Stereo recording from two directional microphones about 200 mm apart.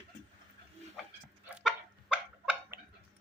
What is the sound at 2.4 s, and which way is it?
Tick-tock, 5° right (ahead or behind).